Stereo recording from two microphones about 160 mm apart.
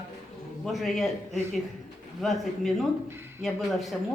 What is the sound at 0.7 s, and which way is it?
Speech, centre (ahead or behind).